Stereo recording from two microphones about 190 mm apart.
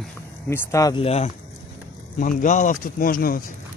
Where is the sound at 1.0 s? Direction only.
35° left (ahead or behind).